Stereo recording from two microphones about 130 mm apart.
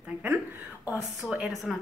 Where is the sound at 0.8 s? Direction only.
20° left (ahead or behind).